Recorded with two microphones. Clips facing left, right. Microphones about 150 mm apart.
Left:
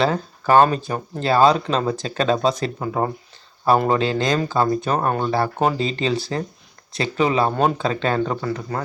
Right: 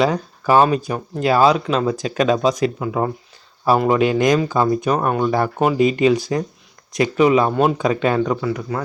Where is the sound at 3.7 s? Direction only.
10° right (ahead or behind).